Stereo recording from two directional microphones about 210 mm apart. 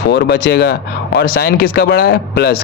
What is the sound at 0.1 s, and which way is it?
A man's voice, 50° left (ahead or behind).